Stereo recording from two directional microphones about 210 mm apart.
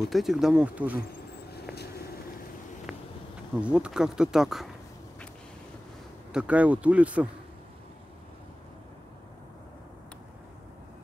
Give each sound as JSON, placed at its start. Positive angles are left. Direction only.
{"t": 0.1, "sound": "speech", "side_deg": 0}
{"t": 1.5, "sound": "vehicle", "side_deg": 50}
{"t": 2.9, "sound": "bee", "side_deg": -5}
{"t": 3.5, "sound": "speech", "side_deg": -5}
{"t": 6.3, "sound": "a man's voice", "side_deg": -5}